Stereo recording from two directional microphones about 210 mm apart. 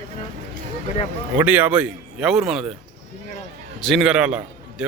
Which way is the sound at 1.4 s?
5° right (ahead or behind).